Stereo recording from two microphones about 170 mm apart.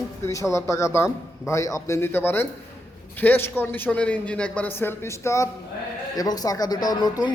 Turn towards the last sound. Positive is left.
turn(degrees=25)  # may be behind; listen again after turning